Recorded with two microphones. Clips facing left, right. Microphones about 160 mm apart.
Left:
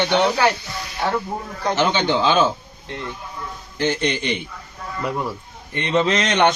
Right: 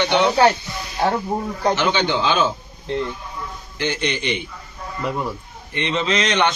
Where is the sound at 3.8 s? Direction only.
40° left (ahead or behind).